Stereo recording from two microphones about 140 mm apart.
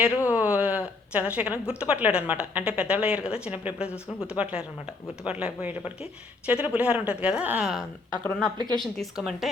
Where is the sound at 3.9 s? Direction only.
15° left (ahead or behind).